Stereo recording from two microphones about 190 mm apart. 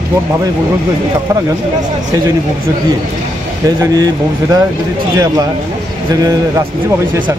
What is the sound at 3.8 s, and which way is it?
Speech, 20° right (ahead or behind).